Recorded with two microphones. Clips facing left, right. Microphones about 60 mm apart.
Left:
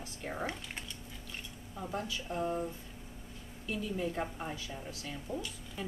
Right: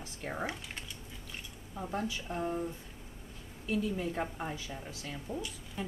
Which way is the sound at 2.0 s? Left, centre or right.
Centre.